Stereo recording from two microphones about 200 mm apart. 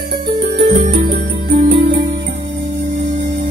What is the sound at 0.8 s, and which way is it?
Music, 50° right (ahead or behind).